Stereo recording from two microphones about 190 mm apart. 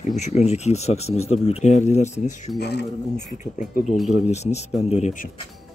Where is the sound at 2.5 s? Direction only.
60° left (ahead or behind).